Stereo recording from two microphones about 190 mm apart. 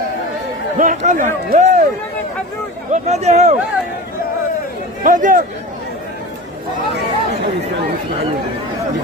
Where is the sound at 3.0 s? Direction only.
35° right (ahead or behind).